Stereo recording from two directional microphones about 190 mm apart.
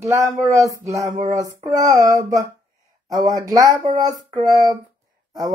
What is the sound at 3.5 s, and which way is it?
Speech, 20° right (ahead or behind).